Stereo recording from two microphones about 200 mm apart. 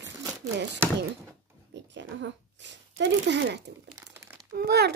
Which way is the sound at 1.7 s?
65° right (ahead or behind).